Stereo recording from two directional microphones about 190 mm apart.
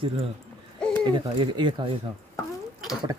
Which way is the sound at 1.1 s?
25° right (ahead or behind).